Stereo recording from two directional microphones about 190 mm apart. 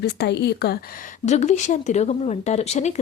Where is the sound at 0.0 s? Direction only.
60° left (ahead or behind).